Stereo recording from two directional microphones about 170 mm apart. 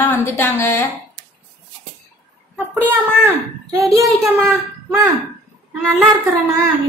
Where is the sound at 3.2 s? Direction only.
20° right (ahead or behind).